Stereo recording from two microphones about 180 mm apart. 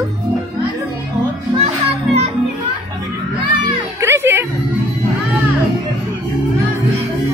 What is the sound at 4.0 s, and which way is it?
Music, 15° right (ahead or behind).